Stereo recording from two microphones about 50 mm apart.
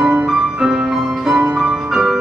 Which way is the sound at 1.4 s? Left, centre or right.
Right.